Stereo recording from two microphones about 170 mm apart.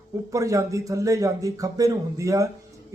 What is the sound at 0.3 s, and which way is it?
Speech, 20° right (ahead or behind).